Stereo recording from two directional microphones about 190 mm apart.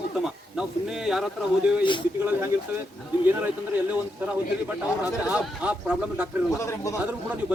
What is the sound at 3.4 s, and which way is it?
Speech, 10° right (ahead or behind).